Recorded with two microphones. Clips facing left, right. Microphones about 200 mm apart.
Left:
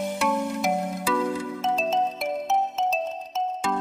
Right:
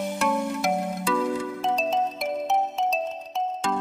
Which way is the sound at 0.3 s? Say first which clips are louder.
Even; centre (ahead or behind).